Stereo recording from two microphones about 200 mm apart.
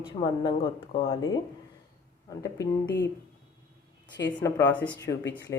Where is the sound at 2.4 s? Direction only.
15° left (ahead or behind).